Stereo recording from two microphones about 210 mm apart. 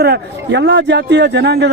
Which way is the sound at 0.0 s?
50° right (ahead or behind).